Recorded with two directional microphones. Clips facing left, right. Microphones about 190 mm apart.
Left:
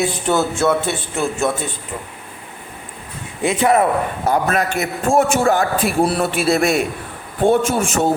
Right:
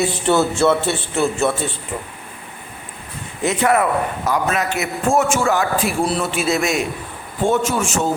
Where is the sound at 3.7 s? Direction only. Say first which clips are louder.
Left 2 dB; 30° left (ahead or behind).